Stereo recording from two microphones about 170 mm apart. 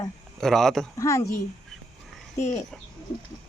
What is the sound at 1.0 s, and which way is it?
Speech, 20° left (ahead or behind).